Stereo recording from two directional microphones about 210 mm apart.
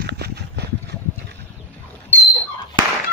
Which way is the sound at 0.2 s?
50° right (ahead or behind).